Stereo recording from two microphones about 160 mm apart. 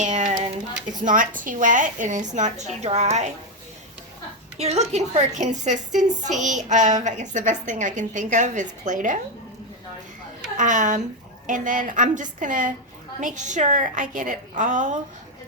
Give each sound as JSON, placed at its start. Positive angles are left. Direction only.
{"t": 0.0, "sound": "a sound", "side_deg": -50}
{"t": 1.0, "sound": "a woman's voice", "side_deg": -55}
{"t": 4.5, "sound": "a woman's voice", "side_deg": -40}
{"t": 10.6, "sound": "a woman's voice", "side_deg": -50}